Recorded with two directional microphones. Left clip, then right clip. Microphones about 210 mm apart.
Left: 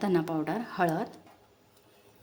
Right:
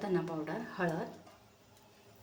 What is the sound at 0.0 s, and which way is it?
A woman's voice, 55° left (ahead or behind).